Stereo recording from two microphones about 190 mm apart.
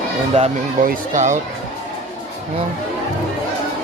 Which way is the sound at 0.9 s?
40° right (ahead or behind).